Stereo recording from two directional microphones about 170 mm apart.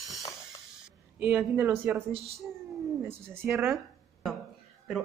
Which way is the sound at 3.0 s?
15° right (ahead or behind).